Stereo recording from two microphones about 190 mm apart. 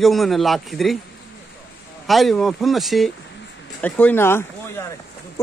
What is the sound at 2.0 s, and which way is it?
Speech, centre (ahead or behind).